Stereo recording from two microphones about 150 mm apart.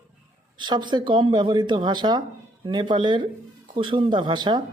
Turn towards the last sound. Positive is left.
turn(degrees=-30)  # may be behind; listen again after turning